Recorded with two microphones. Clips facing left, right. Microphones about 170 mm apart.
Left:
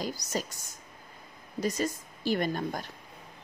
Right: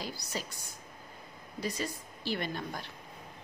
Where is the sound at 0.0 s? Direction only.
45° left (ahead or behind).